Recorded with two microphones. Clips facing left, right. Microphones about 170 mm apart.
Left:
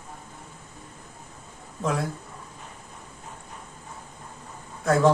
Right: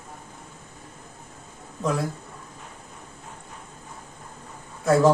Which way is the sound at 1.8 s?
Centre (ahead or behind).